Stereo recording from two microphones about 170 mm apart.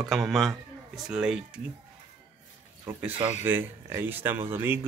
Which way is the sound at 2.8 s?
10° right (ahead or behind).